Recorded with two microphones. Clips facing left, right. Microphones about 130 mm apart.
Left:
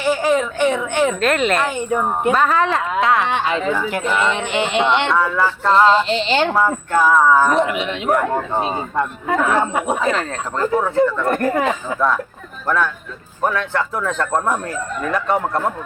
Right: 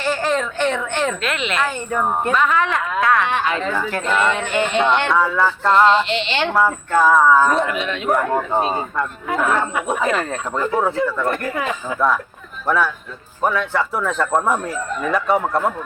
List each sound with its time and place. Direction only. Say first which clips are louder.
0.0 s a woman's voice: left 3 dB; 10° left (ahead or behind)
1.2 s speech: left 5 dB; 45° left (ahead or behind)
1.6 s speech: left 2 dB; 15° left (ahead or behind)
2.3 s a woman's voice: left 3 dB; 35° left (ahead or behind)
3.8 s speech: even; 10° left (ahead or behind)
4.3 s speech: even; 15° left (ahead or behind)
5.0 s speech: even; centre (ahead or behind)
5.9 s a woman's voice: left 2 dB; 35° left (ahead or behind)
6.9 s speech: even; centre (ahead or behind)
7.5 s speech: left 2 dB; 15° left (ahead or behind)
10.0 s speech: even; 5° right (ahead or behind)
10.9 s a woman's voice: left 4 dB; 40° left (ahead or behind)
11.9 s speech: even; centre (ahead or behind)